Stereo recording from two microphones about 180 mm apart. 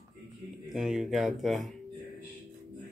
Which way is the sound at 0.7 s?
Centre (ahead or behind).